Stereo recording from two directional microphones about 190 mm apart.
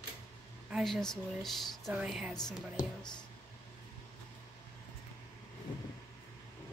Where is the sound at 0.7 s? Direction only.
Centre (ahead or behind).